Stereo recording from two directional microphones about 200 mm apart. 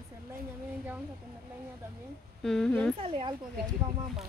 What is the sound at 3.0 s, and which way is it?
Speech, 25° right (ahead or behind).